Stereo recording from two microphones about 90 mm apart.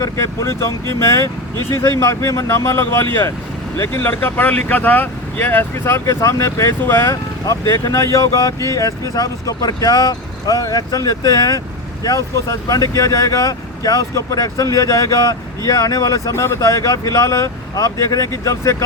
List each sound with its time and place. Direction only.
0.0 s speech: 35° left (ahead or behind)